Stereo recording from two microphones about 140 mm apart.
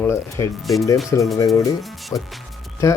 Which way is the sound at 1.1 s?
20° left (ahead or behind).